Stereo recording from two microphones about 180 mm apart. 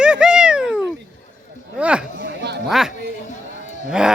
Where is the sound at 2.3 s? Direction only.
65° right (ahead or behind).